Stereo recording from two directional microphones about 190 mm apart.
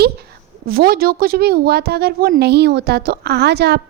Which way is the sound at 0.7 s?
55° right (ahead or behind).